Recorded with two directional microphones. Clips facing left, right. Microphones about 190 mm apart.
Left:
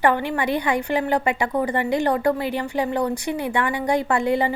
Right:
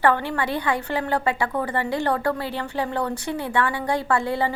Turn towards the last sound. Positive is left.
turn(degrees=15)  # may be behind; listen again after turning